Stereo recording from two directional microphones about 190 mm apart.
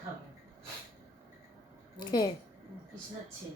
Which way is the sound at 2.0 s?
20° left (ahead or behind).